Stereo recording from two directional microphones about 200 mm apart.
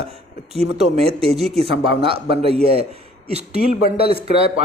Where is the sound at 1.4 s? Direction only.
Centre (ahead or behind).